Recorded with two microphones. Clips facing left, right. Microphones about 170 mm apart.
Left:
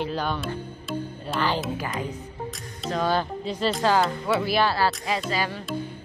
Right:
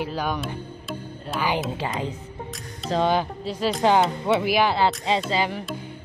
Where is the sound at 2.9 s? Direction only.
25° right (ahead or behind).